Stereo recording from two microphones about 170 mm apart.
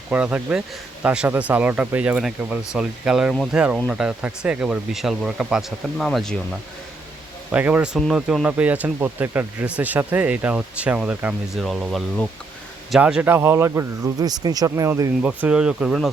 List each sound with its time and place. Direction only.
0.1 s speech: 10° right (ahead or behind)
15.2 s speech: 10° right (ahead or behind)